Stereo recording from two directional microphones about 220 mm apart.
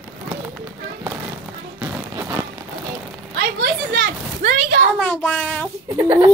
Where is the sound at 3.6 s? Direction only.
55° right (ahead or behind).